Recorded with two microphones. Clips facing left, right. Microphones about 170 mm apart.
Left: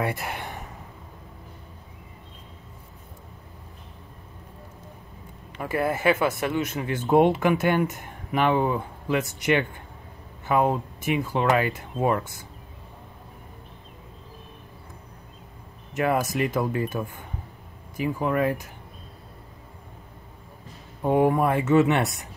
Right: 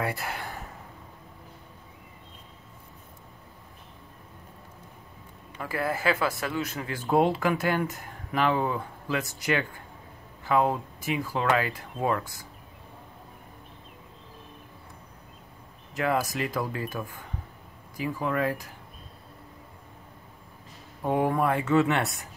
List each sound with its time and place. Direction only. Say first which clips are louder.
0.0 s speech: left 3 dB; 20° left (ahead or behind)
5.6 s speech: left 4 dB; 25° left (ahead or behind)
15.9 s speech: left 3 dB; 25° left (ahead or behind)
21.0 s speech: left 4 dB; 20° left (ahead or behind)